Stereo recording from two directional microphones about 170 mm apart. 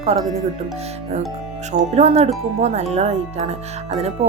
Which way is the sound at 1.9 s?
40° right (ahead or behind).